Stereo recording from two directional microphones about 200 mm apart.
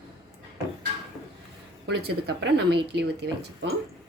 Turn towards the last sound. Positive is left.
turn(degrees=-55)  # may be behind; listen again after turning